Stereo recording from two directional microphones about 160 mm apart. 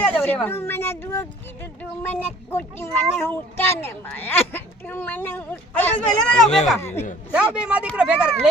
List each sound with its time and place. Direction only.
0.0 s a child's voice: 10° left (ahead or behind)
6.7 s a child's voice: 15° left (ahead or behind)
7.5 s speech: 5° right (ahead or behind)